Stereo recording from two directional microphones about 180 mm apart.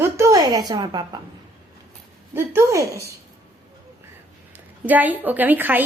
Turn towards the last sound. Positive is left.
turn(degrees=-10)  # may be behind; listen again after turning